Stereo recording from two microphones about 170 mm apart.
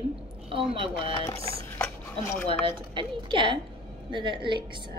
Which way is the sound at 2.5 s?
30° right (ahead or behind).